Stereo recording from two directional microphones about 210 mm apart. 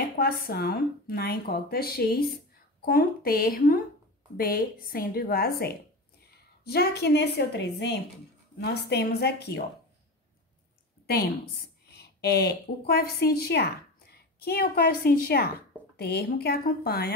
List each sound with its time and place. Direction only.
0.2 s a woman's voice: 45° left (ahead or behind)
11.9 s a woman's voice: 50° left (ahead or behind)